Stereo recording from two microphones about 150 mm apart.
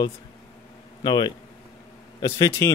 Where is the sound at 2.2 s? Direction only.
20° left (ahead or behind).